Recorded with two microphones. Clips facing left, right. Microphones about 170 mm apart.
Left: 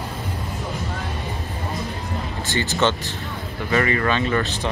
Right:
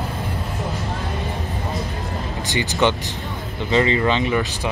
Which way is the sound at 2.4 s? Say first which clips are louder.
Right 1 dB; 15° right (ahead or behind).